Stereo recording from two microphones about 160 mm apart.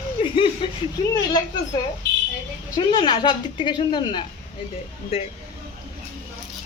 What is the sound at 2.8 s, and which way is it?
A woman's voice, 30° left (ahead or behind).